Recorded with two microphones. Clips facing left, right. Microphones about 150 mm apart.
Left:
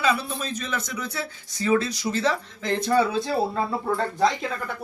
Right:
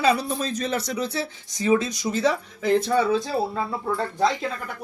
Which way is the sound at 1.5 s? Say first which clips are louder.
Right 1 dB; 20° right (ahead or behind).